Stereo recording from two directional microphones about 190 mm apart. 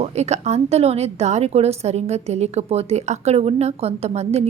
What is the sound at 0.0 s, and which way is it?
A woman's voice, 35° right (ahead or behind).